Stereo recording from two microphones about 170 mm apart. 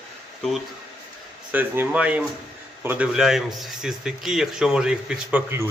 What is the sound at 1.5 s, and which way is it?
A man's voice, 10° right (ahead or behind).